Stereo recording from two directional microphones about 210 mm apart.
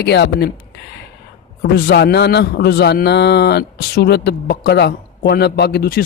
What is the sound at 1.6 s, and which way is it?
A man's voice, 50° left (ahead or behind).